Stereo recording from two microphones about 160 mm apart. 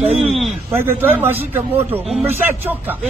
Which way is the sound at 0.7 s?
15° right (ahead or behind).